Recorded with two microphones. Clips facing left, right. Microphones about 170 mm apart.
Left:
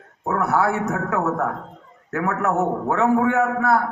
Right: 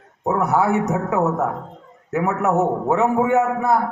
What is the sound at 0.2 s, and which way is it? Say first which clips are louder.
A man's voice: right 2 dB; 20° right (ahead or behind).